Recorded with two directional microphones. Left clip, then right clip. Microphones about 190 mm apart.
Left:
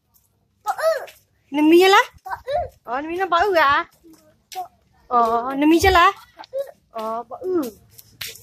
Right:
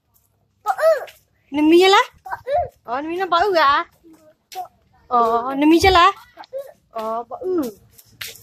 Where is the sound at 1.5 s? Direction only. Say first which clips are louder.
Even; 20° left (ahead or behind).